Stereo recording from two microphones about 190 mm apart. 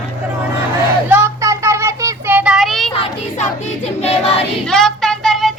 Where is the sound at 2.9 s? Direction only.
30° left (ahead or behind).